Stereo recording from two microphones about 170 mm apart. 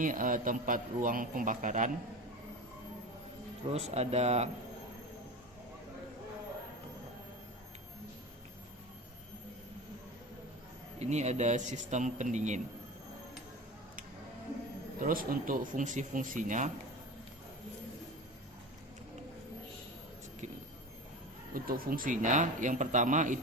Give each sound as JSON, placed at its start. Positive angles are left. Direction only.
{"t": 0.0, "sound": "speech", "side_deg": -50}
{"t": 3.7, "sound": "speech", "side_deg": -40}
{"t": 11.0, "sound": "speech", "side_deg": -40}
{"t": 15.0, "sound": "speech", "side_deg": -55}
{"t": 21.5, "sound": "speech", "side_deg": -55}